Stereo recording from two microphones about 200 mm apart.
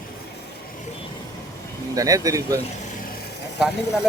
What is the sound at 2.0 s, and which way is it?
Speech, 15° right (ahead or behind).